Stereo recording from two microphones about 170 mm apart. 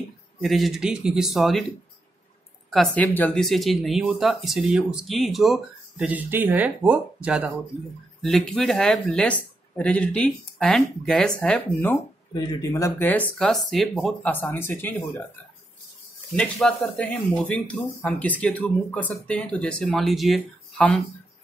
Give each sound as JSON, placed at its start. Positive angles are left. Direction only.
{"t": 0.4, "sound": "speech", "side_deg": 0}
{"t": 2.7, "sound": "speech", "side_deg": 5}
{"t": 12.4, "sound": "speech", "side_deg": 20}
{"t": 13.4, "sound": "speech", "side_deg": 0}
{"t": 16.6, "sound": "speech", "side_deg": 5}